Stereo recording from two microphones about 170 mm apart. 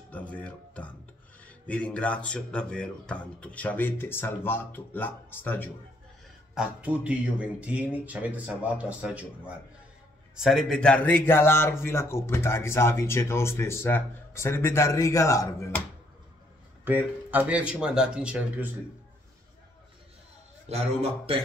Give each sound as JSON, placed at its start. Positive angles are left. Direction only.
{"t": 0.1, "sound": "speech", "side_deg": 10}
{"t": 6.5, "sound": "a man's voice", "side_deg": -5}
{"t": 16.8, "sound": "a man's voice", "side_deg": -10}
{"t": 20.6, "sound": "a man's voice", "side_deg": -40}